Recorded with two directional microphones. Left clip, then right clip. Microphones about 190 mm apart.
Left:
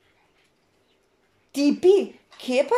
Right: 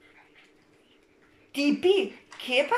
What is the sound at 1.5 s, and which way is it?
Speech, 25° left (ahead or behind).